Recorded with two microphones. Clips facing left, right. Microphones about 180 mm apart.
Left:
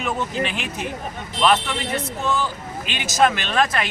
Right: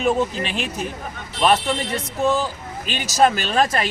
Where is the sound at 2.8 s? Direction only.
40° right (ahead or behind).